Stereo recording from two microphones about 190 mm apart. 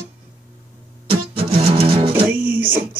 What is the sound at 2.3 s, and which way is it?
Music, 10° right (ahead or behind).